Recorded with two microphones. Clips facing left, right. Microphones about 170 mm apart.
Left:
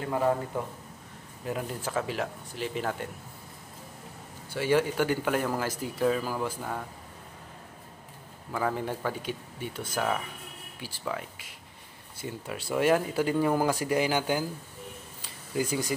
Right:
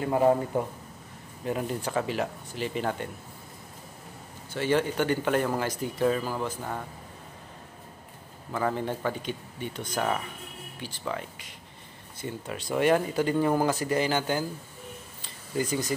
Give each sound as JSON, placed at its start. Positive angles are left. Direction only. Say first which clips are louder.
{"t": 0.0, "sound": "a man's voice", "louder": "right 4 dB", "side_deg": -20}
{"t": 1.4, "sound": "speech", "louder": "right 3 dB", "side_deg": 0}
{"t": 4.5, "sound": "speech", "louder": "even", "side_deg": 10}
{"t": 8.5, "sound": "speech", "louder": "right 1 dB", "side_deg": 5}
{"t": 15.2, "sound": "a sound", "louder": "even", "side_deg": 10}